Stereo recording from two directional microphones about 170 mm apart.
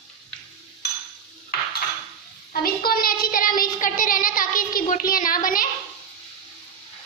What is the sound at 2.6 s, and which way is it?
A woman's voice, 60° left (ahead or behind).